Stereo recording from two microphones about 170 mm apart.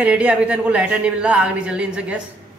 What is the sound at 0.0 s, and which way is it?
A woman's voice, 10° right (ahead or behind).